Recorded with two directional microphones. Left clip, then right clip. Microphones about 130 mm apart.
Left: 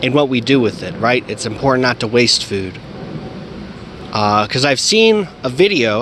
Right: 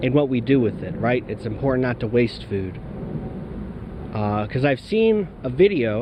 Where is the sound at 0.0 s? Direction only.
30° left (ahead or behind).